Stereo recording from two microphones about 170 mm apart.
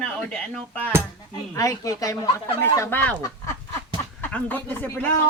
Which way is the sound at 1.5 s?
20° left (ahead or behind).